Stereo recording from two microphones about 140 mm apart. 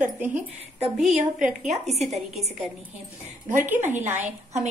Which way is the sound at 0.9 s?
5° right (ahead or behind).